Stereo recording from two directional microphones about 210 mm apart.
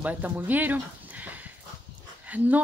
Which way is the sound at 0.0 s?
5° right (ahead or behind).